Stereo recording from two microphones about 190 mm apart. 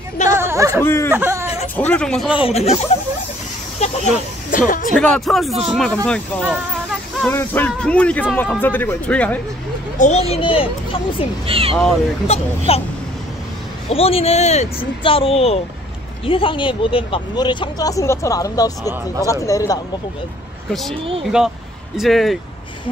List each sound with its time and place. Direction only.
0.4 s a sound: 15° right (ahead or behind)
0.8 s speech: 10° left (ahead or behind)
1.1 s speech: 10° right (ahead or behind)
1.5 s a sound: 35° left (ahead or behind)
1.9 s speech: 5° left (ahead or behind)
2.3 s speech: 30° left (ahead or behind)
3.8 s speech: 40° left (ahead or behind)
5.1 s speech: centre (ahead or behind)
9.9 s speech: 40° left (ahead or behind)
10.3 s speech: 30° left (ahead or behind)
11.4 s speech: 30° right (ahead or behind)
12.3 s speech: 30° left (ahead or behind)
13.8 s speech: 30° left (ahead or behind)
21.2 s speech: 5° right (ahead or behind)